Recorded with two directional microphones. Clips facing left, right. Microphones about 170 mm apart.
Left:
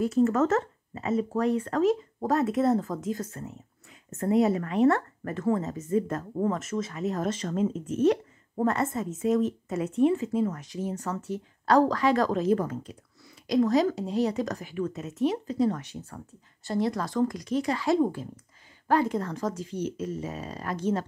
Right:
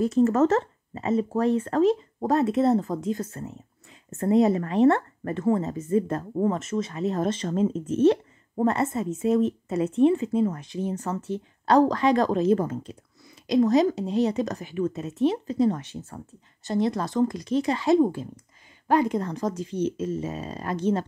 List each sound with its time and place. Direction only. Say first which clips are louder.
0.0 s speech: right 3 dB; 40° right (ahead or behind)